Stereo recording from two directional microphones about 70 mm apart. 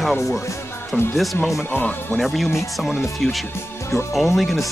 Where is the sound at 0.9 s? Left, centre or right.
Left.